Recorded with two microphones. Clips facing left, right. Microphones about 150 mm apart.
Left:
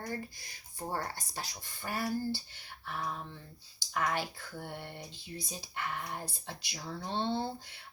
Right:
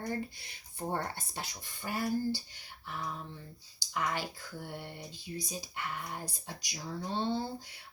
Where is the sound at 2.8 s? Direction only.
45° left (ahead or behind).